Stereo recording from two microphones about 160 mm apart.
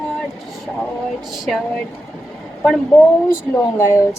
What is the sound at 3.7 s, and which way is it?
Speech, 15° left (ahead or behind).